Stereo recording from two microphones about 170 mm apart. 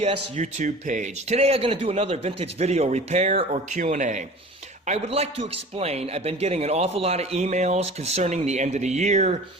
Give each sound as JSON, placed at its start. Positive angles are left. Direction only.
{"t": 0.0, "sound": "a man's voice", "side_deg": -40}